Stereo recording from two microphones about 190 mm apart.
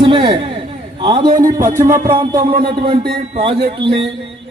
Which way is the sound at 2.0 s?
20° right (ahead or behind).